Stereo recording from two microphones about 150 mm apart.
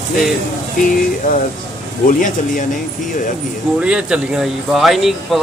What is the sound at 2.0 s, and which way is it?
Speech, 65° left (ahead or behind).